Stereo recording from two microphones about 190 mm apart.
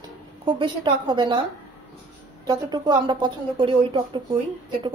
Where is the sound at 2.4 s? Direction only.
20° right (ahead or behind).